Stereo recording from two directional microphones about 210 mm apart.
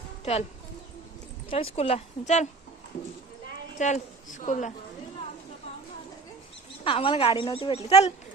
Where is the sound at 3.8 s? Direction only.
35° left (ahead or behind).